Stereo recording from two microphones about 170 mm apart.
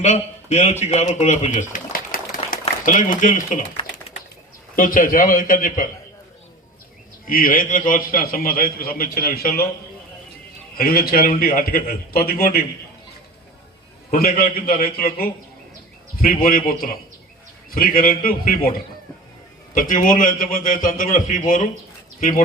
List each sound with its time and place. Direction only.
0.0 s a man's voice: 40° left (ahead or behind)
1.7 s a sound: 55° left (ahead or behind)
4.7 s a man's voice: 55° left (ahead or behind)
7.3 s a man's voice: 55° left (ahead or behind)
10.8 s a man's voice: 60° left (ahead or behind)
14.3 s a man's voice: 60° left (ahead or behind)
19.7 s a man's voice: 55° left (ahead or behind)